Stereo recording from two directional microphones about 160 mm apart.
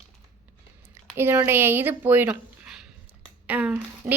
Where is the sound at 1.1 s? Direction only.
15° right (ahead or behind).